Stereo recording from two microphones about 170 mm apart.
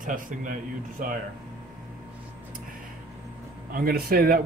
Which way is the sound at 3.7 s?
60° right (ahead or behind).